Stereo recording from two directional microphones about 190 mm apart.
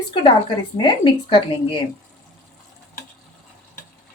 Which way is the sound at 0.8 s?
25° left (ahead or behind).